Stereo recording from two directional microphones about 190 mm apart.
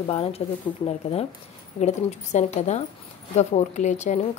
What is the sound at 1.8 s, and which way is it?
A woman's voice, 35° left (ahead or behind).